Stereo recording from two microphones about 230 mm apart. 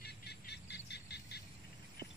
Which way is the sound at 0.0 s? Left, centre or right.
Left.